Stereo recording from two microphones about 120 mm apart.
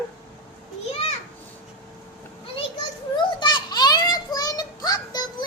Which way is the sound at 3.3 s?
40° left (ahead or behind).